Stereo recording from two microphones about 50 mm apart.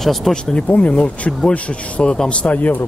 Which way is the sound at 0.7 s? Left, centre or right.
Left.